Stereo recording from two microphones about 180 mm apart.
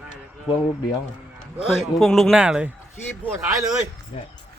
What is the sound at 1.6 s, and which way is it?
A man's voice, centre (ahead or behind).